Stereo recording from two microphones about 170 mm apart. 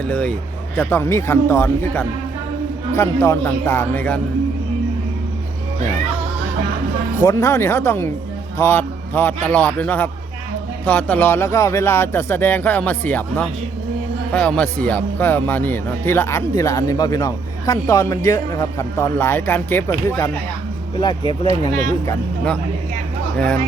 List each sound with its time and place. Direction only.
0.0 s speech: 5° left (ahead or behind)
7.3 s a man's voice: 20° left (ahead or behind)
21.0 s speech: 25° left (ahead or behind)